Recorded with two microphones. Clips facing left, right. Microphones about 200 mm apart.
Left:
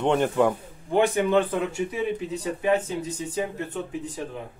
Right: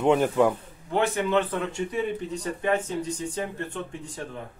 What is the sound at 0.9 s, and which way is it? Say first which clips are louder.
Speech: left 3 dB; 15° left (ahead or behind).